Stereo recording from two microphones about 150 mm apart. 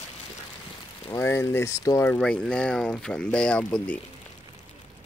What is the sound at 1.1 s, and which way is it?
Speech, 15° left (ahead or behind).